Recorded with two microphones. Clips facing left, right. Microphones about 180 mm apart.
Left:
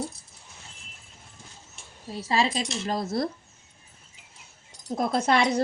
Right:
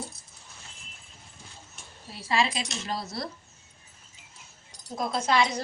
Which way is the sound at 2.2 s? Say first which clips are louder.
Left 2 dB; 40° left (ahead or behind).